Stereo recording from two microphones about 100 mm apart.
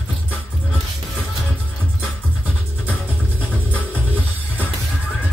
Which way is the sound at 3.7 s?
15° left (ahead or behind).